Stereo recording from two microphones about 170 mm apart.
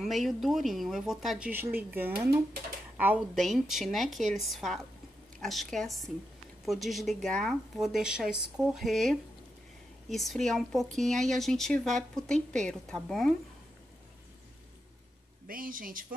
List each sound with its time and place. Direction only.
0.0 s speech: centre (ahead or behind)
3.3 s speech: centre (ahead or behind)
15.4 s speech: 55° right (ahead or behind)